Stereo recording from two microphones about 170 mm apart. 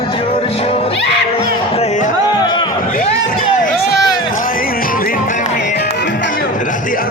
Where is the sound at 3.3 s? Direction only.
60° left (ahead or behind).